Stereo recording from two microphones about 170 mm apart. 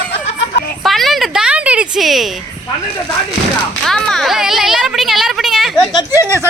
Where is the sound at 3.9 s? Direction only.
5° left (ahead or behind).